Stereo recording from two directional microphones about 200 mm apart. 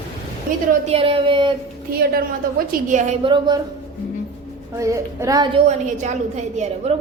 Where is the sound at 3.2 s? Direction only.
25° right (ahead or behind).